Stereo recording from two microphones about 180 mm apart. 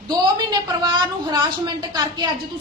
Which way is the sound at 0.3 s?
25° right (ahead or behind).